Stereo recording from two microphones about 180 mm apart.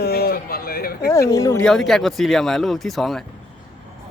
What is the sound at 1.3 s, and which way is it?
Speech, 15° left (ahead or behind).